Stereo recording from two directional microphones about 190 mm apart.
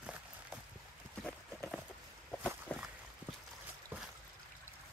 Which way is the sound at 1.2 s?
5° left (ahead or behind).